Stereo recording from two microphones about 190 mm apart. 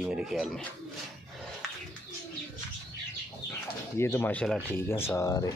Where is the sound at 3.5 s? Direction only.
15° left (ahead or behind).